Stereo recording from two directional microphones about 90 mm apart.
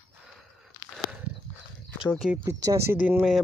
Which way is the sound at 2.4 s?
35° right (ahead or behind).